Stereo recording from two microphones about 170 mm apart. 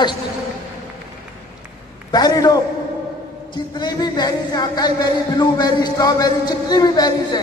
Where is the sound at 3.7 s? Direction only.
25° left (ahead or behind).